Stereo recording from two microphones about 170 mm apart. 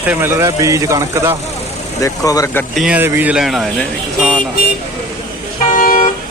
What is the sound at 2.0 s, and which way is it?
Speech, 20° left (ahead or behind).